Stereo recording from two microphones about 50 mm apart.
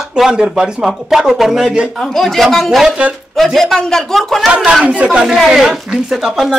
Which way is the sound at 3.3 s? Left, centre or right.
Centre.